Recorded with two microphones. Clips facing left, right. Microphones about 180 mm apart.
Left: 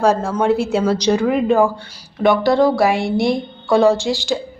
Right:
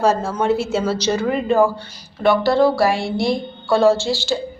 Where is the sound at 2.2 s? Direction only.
15° left (ahead or behind).